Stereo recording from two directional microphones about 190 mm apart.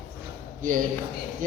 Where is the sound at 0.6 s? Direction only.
45° right (ahead or behind).